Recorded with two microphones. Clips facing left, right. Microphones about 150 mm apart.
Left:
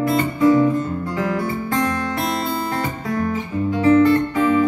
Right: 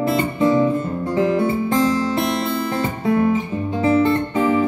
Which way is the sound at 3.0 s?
25° right (ahead or behind).